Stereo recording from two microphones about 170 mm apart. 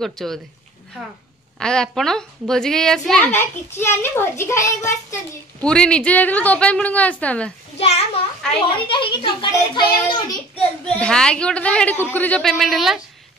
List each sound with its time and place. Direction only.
0.0 s a woman's voice: centre (ahead or behind)
1.6 s a woman's voice: 5° left (ahead or behind)
5.6 s a woman's voice: 5° left (ahead or behind)
7.7 s a child's voice: 35° left (ahead or behind)
10.9 s a woman's voice: 5° left (ahead or behind)